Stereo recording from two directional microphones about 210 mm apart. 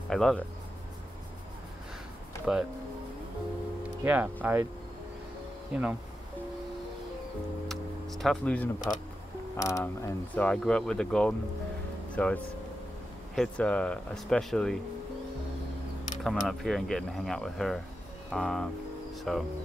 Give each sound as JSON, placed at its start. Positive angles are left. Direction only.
{"t": 0.1, "sound": "speech", "side_deg": 0}
{"t": 2.5, "sound": "speech", "side_deg": -5}
{"t": 4.0, "sound": "speech", "side_deg": -10}
{"t": 5.7, "sound": "speech", "side_deg": -5}
{"t": 7.6, "sound": "a sound", "side_deg": 0}
{"t": 8.9, "sound": "speech", "side_deg": 10}
{"t": 16.3, "sound": "speech", "side_deg": 0}